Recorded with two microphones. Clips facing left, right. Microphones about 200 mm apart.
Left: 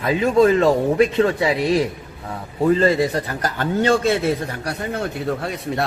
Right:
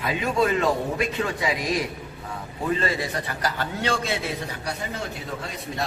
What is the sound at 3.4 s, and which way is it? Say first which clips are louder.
A man's voice: left 8 dB; 50° left (ahead or behind).